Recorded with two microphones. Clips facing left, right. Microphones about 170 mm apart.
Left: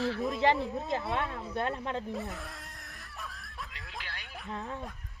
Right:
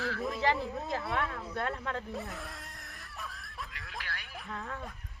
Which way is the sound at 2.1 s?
Centre (ahead or behind).